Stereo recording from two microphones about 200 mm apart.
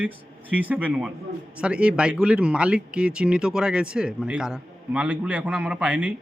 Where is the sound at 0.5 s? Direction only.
10° right (ahead or behind).